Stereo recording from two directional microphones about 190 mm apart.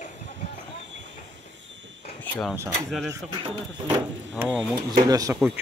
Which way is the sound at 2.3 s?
10° left (ahead or behind).